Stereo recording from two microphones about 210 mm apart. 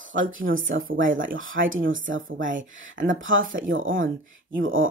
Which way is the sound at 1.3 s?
70° right (ahead or behind).